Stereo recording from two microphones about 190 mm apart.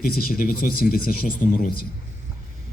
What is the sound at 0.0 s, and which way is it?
Speech, 50° left (ahead or behind).